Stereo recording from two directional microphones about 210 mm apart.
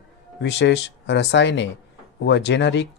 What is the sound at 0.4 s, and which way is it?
Speech, 55° left (ahead or behind).